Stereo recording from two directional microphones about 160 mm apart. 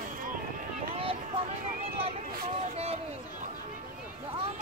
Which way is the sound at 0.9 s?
35° right (ahead or behind).